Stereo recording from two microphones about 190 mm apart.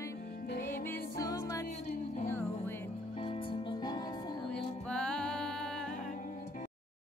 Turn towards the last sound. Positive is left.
turn(degrees=5)  # may be behind; listen again after turning